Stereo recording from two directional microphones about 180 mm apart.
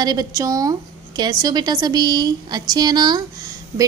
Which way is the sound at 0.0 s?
20° right (ahead or behind).